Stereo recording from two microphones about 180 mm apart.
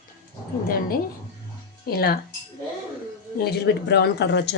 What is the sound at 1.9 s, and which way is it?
Speech, 60° left (ahead or behind).